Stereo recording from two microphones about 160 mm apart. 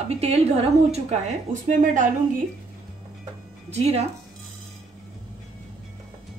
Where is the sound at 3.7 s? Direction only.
40° right (ahead or behind).